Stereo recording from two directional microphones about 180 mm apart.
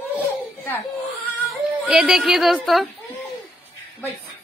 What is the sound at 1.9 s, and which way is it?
A woman's voice, 5° right (ahead or behind).